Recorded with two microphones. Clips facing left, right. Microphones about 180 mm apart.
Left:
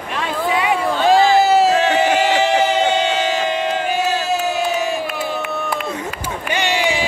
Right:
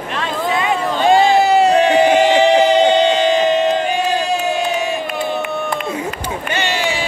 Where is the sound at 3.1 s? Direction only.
10° left (ahead or behind).